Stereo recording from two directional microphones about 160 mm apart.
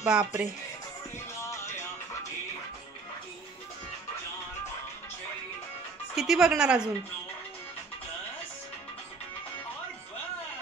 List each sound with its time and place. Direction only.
0.0 s speech: 5° right (ahead or behind)
1.4 s music: 15° left (ahead or behind)
6.1 s speech: centre (ahead or behind)